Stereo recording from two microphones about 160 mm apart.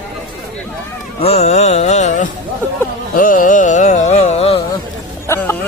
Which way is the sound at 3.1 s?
55° left (ahead or behind).